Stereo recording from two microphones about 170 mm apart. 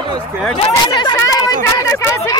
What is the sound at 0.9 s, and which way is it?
Speech, 25° left (ahead or behind).